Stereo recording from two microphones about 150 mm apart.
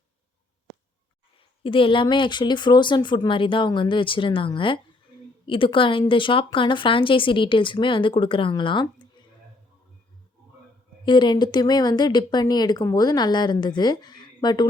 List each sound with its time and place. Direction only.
1.6 s speech: 35° left (ahead or behind)
11.0 s a woman's voice: 30° left (ahead or behind)